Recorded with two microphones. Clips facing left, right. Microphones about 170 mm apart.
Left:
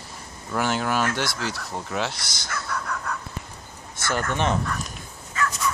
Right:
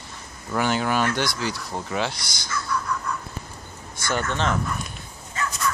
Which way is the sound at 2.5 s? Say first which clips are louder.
Right 3 dB; 60° left (ahead or behind).